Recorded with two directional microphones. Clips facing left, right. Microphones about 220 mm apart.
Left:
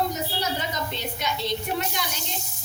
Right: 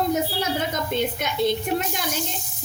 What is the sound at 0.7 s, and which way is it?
Speech, 50° right (ahead or behind).